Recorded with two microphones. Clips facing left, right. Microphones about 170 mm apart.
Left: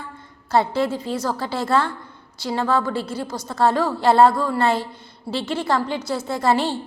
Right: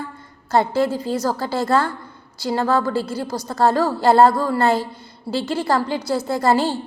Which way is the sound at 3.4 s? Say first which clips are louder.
Right 1 dB; centre (ahead or behind).